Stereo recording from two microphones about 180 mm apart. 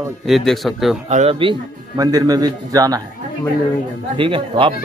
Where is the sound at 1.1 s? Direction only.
35° right (ahead or behind); by 3.0 s 20° right (ahead or behind).